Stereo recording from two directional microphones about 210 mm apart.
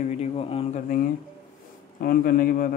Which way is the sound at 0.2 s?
25° left (ahead or behind).